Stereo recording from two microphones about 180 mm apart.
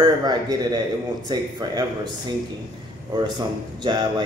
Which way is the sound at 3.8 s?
25° right (ahead or behind).